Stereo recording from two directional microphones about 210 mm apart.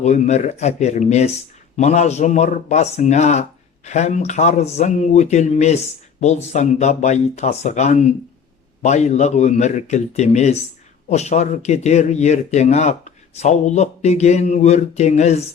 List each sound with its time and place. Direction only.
0.0 s speech: 30° left (ahead or behind)